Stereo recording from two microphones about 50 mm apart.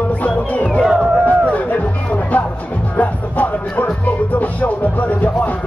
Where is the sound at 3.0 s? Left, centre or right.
Left.